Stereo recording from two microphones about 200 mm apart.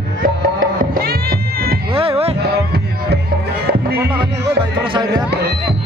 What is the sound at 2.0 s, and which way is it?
Music, 30° right (ahead or behind).